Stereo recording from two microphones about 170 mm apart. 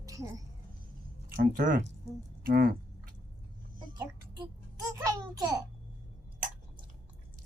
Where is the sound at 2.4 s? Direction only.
60° right (ahead or behind).